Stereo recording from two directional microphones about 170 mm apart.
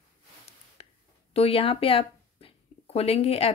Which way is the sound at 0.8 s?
35° left (ahead or behind).